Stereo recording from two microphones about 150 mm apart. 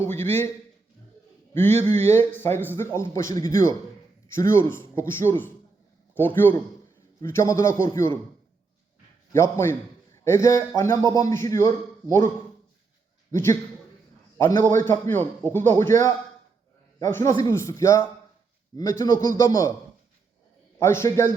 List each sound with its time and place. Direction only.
0.0 s speech: 15° left (ahead or behind)
2.0 s a man's voice: 15° left (ahead or behind)
9.3 s a man's voice: 15° left (ahead or behind)
13.3 s speech: 20° left (ahead or behind)
14.8 s a man's voice: 15° left (ahead or behind)
20.7 s speech: 20° left (ahead or behind)